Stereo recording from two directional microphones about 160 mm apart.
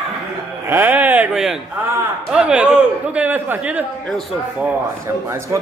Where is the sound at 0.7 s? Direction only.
10° right (ahead or behind).